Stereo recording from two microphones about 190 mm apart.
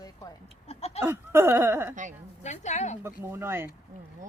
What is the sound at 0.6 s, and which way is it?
Speech, 35° left (ahead or behind).